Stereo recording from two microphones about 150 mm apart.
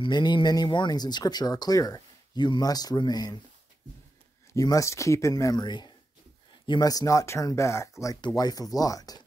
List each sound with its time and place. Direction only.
0.0 s speech: 30° left (ahead or behind)
4.6 s speech: 20° left (ahead or behind)